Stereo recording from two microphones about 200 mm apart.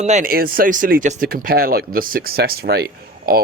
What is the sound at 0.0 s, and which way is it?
Speech, 35° right (ahead or behind).